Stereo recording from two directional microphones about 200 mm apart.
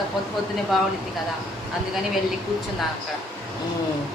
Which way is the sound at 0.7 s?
Centre (ahead or behind).